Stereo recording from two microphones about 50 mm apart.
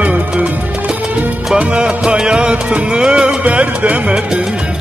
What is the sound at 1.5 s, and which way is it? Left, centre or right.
Music, right.